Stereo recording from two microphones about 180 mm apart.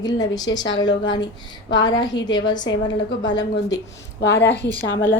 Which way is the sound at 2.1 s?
85° left.